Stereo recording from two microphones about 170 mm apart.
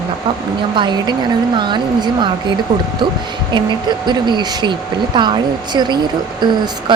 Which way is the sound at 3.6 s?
25° right (ahead or behind).